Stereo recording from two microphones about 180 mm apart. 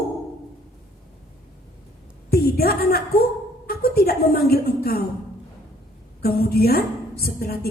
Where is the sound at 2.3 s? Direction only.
60° left (ahead or behind).